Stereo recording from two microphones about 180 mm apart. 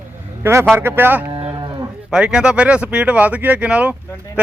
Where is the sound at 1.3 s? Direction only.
25° right (ahead or behind).